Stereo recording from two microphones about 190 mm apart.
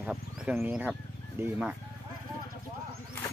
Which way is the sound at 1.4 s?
10° right (ahead or behind).